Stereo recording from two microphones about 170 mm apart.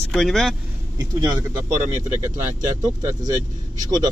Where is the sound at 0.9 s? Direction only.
25° right (ahead or behind).